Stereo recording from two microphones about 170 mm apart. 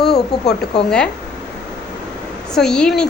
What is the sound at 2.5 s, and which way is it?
Speech, 5° left (ahead or behind).